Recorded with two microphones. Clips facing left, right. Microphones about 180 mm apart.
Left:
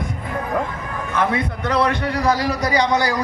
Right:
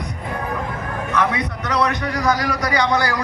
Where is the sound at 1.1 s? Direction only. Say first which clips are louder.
Left 1 dB; 25° left (ahead or behind).